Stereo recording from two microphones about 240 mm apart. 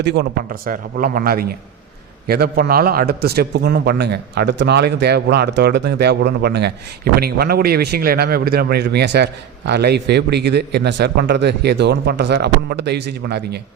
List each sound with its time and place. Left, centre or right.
0.0 s a man's voice: right